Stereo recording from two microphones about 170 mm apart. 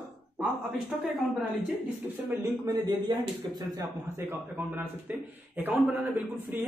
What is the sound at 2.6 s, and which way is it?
Speech, 20° right (ahead or behind).